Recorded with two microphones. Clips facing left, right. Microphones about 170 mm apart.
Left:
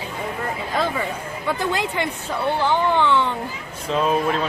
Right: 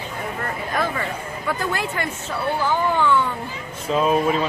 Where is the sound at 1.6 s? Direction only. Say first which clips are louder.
Left 4 dB; 20° left (ahead or behind).